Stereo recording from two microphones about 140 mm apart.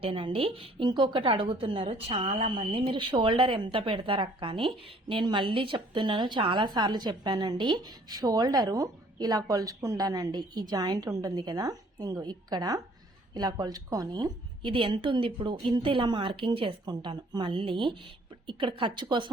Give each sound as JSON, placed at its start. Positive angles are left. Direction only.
{"t": 0.0, "sound": "speech", "side_deg": -40}